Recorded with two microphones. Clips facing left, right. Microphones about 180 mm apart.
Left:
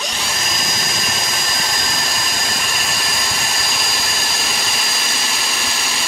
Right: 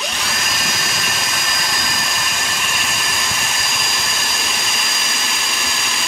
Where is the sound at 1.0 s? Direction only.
30° left (ahead or behind).